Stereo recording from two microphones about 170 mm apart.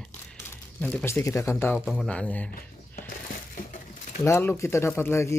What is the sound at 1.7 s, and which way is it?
Speech, centre (ahead or behind).